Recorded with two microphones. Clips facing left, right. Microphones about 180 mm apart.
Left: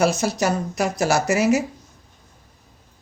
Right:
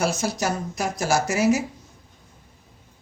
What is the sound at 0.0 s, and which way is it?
Speech, 65° left (ahead or behind).